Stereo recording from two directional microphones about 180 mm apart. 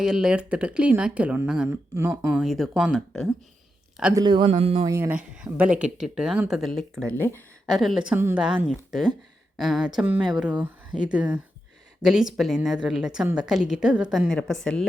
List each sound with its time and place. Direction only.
0.0 s speech: 5° right (ahead or behind)
4.1 s speech: 25° right (ahead or behind)
4.9 s speech: 15° right (ahead or behind); by 7.4 s 10° left (ahead or behind)
7.7 s speech: centre (ahead or behind)